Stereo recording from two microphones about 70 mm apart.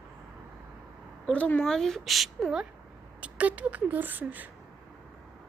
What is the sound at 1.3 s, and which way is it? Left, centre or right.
Speech, left.